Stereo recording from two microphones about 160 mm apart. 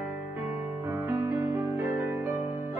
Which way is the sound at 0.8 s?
15° right (ahead or behind).